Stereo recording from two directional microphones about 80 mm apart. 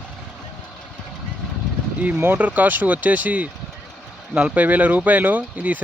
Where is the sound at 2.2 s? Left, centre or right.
Right.